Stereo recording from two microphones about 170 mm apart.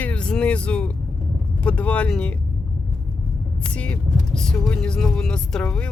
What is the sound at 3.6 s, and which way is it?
Speech, 5° left (ahead or behind).